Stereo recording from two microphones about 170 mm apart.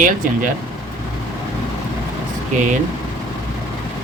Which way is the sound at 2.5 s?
50° right (ahead or behind).